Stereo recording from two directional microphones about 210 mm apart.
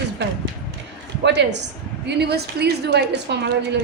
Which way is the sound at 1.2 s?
55° right (ahead or behind).